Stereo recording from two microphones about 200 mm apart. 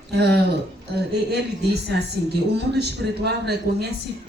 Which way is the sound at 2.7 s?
55° right (ahead or behind).